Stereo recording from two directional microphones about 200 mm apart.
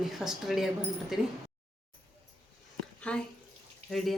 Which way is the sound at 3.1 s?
5° left (ahead or behind).